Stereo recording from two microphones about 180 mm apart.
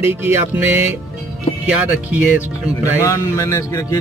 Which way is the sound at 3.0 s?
15° left (ahead or behind).